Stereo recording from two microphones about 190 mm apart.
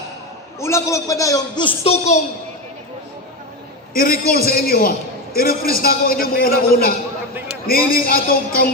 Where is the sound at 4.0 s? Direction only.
50° left (ahead or behind).